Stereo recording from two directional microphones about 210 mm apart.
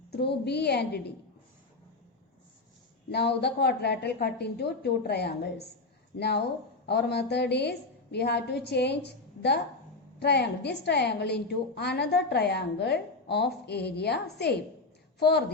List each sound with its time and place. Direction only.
0.1 s a woman's voice: 50° left (ahead or behind)
3.1 s a woman's voice: 50° left (ahead or behind)